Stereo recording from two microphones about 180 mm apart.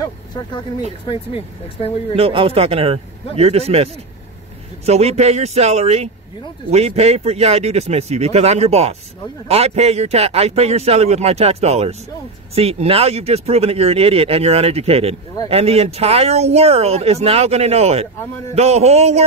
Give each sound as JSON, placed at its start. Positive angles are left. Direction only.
{"t": 0.0, "sound": "vehicle", "side_deg": 25}
{"t": 1.0, "sound": "speech", "side_deg": 30}
{"t": 2.1, "sound": "speech", "side_deg": -30}